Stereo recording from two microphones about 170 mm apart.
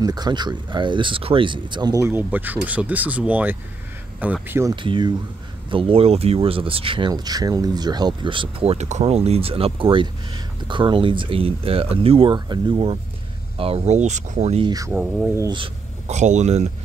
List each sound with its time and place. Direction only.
0.0 s speech: 25° right (ahead or behind)
4.7 s speech: 30° right (ahead or behind)
14.7 s speech: 15° right (ahead or behind)
15.0 s speech: 5° right (ahead or behind)
15.3 s speech: 25° right (ahead or behind)
16.1 s speech: 45° right (ahead or behind)